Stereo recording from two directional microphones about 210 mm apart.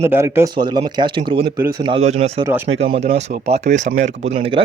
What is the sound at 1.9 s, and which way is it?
Speech, 30° right (ahead or behind).